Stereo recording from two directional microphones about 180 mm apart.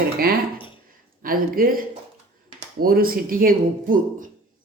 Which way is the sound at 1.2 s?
55° right (ahead or behind).